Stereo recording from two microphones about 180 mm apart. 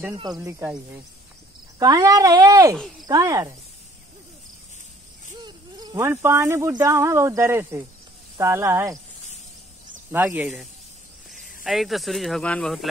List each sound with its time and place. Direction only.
0.1 s speech: 25° right (ahead or behind)
1.8 s speech: 20° right (ahead or behind)
5.4 s speech: 25° right (ahead or behind)
10.1 s speech: 10° right (ahead or behind)